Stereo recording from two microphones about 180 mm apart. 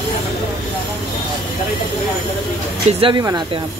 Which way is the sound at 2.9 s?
35° right (ahead or behind).